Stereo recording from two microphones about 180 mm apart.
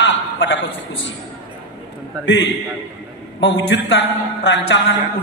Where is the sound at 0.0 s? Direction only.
90° left.